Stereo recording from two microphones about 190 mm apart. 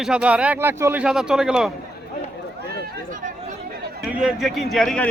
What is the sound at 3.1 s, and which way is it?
Chatter, 45° right (ahead or behind).